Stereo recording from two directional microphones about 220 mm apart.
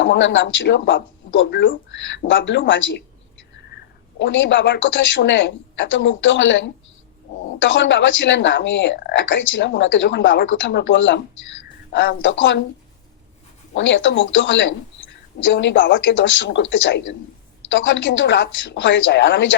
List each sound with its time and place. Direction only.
0.0 s speech: 55° left (ahead or behind)
4.2 s a woman's voice: 55° left (ahead or behind)
13.7 s speech: 55° left (ahead or behind)